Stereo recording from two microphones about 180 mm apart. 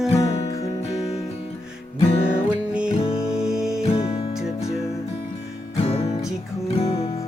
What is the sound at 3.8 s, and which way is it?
Music, 30° left (ahead or behind).